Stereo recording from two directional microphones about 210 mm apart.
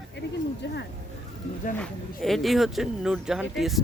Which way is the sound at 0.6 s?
55° left (ahead or behind).